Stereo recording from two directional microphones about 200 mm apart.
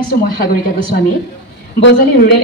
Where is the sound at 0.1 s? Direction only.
50° left (ahead or behind).